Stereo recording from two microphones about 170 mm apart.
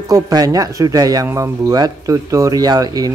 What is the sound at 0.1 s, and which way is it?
Speech, 20° right (ahead or behind).